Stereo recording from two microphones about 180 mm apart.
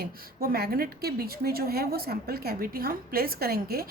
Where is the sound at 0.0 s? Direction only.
60° right (ahead or behind).